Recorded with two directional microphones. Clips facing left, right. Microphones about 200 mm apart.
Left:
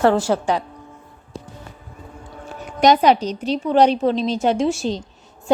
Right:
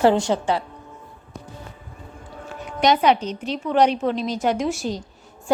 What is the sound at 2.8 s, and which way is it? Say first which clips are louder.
A woman's voice: left 3 dB; 40° left (ahead or behind).